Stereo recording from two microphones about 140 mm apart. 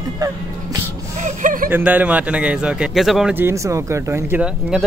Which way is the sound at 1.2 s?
70° right (ahead or behind).